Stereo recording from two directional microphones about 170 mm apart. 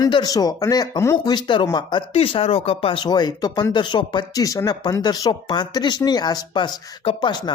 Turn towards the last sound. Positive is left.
turn(degrees=25)  # may be behind; listen again after turning